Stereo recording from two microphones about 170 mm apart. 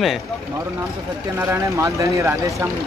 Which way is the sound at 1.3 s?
15° right (ahead or behind).